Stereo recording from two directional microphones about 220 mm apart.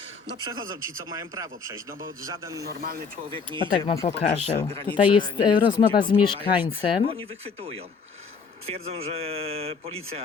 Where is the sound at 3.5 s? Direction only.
20° right (ahead or behind).